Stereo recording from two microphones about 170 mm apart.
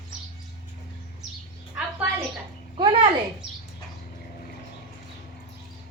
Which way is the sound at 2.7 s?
30° right (ahead or behind).